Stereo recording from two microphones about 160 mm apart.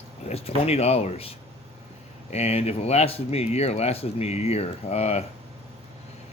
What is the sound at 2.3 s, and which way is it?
Speech, 40° left (ahead or behind).